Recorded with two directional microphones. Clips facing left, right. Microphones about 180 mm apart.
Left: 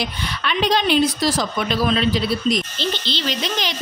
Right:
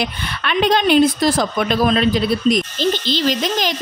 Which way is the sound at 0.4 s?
55° right (ahead or behind).